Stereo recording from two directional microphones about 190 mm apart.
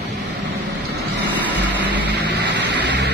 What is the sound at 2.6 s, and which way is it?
Vehicle, 65° right (ahead or behind).